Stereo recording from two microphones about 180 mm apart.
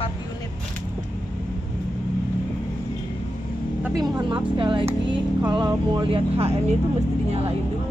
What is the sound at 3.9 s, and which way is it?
Speech, 25° right (ahead or behind).